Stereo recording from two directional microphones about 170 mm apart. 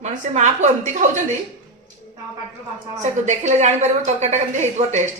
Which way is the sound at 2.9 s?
45° right (ahead or behind).